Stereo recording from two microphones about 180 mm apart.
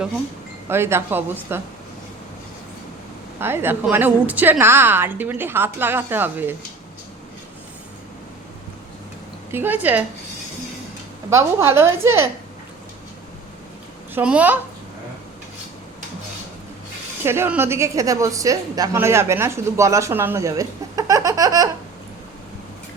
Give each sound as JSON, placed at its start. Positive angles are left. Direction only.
{"t": 0.7, "sound": "a woman's voice", "side_deg": -15}
{"t": 3.4, "sound": "a woman's voice", "side_deg": -10}
{"t": 9.5, "sound": "a woman's voice", "side_deg": -10}
{"t": 11.3, "sound": "a woman's voice", "side_deg": -15}
{"t": 14.2, "sound": "a woman's voice", "side_deg": -10}
{"t": 17.2, "sound": "a woman's voice", "side_deg": -15}